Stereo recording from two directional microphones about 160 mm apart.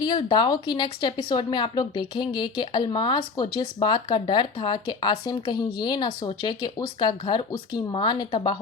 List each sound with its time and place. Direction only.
0.0 s speech: 25° left (ahead or behind)